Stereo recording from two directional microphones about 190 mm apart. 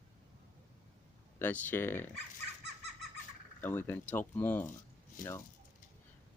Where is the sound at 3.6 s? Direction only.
10° left (ahead or behind).